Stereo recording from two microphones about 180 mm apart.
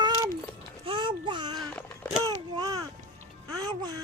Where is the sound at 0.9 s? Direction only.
25° right (ahead or behind).